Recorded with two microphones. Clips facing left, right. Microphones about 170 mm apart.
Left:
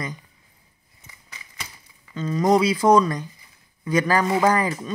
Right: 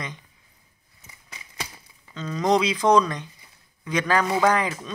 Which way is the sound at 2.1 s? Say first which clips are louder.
Left 3 dB; 5° left (ahead or behind).